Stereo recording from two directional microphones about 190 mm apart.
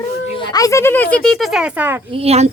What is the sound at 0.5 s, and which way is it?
Speech, 15° left (ahead or behind).